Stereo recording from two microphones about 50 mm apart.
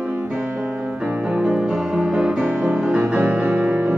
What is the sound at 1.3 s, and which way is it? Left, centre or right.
Music, right.